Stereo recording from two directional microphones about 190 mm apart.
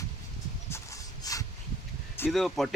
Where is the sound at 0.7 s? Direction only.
15° left (ahead or behind).